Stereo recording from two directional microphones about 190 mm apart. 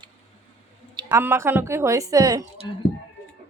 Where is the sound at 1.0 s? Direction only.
10° right (ahead or behind).